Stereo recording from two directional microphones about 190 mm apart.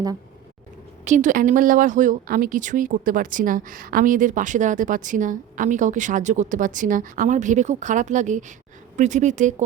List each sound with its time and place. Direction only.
1.0 s speech: 40° right (ahead or behind)